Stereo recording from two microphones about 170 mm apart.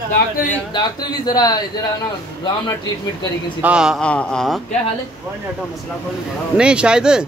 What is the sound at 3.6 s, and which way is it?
Speech, 5° right (ahead or behind).